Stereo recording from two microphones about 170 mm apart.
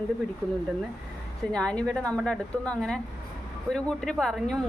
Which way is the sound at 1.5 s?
5° left (ahead or behind).